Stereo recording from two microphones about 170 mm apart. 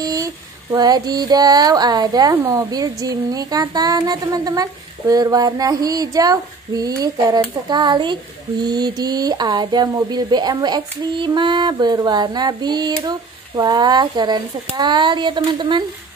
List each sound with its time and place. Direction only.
0.0 s speech: 20° right (ahead or behind)